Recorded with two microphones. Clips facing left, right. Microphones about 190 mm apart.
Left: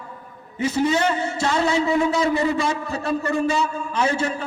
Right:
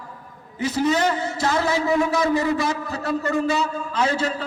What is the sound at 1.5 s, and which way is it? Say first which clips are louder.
A man's voice: left 1 dB; 25° left (ahead or behind).